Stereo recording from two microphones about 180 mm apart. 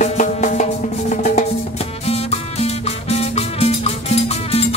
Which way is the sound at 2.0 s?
35° left (ahead or behind).